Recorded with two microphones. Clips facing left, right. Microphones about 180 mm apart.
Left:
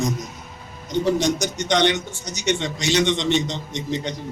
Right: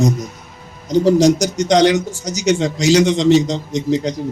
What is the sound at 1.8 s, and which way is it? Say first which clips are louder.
Speech: right 7 dB; 90° right.